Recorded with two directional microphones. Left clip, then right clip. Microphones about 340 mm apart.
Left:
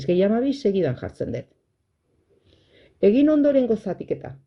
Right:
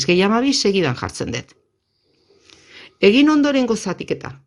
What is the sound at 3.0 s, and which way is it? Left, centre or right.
Speech, right.